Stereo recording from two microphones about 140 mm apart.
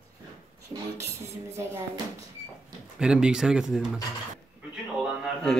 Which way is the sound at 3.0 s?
5° right (ahead or behind).